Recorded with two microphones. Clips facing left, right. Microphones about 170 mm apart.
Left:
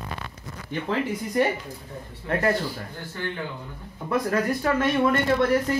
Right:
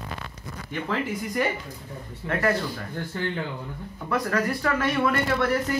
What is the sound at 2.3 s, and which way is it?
Speech, 30° left (ahead or behind).